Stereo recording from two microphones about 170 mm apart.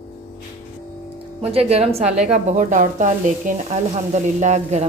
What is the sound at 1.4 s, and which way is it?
Speech, 35° right (ahead or behind).